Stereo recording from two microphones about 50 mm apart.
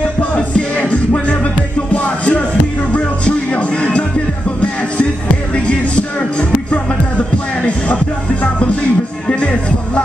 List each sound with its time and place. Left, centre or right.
0.5 s music: left
5.7 s music: left